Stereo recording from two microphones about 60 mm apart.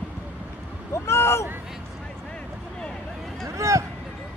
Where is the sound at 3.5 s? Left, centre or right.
Right.